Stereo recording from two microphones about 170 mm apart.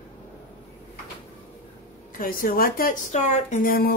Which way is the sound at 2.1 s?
55° left (ahead or behind).